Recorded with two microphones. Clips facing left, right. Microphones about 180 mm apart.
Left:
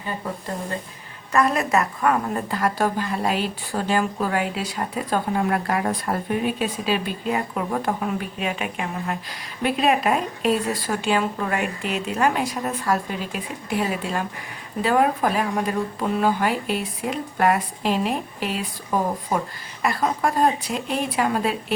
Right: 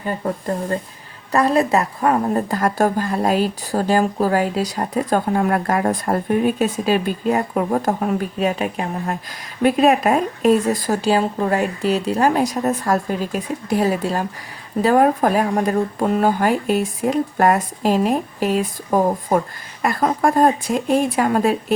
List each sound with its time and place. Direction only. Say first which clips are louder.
1.3 s a woman's voice: right 4 dB; 30° right (ahead or behind)